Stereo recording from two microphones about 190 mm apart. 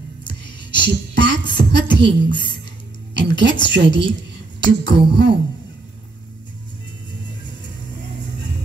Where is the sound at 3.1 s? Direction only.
70° right (ahead or behind).